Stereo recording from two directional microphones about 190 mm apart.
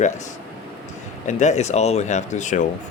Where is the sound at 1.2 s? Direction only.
35° left (ahead or behind).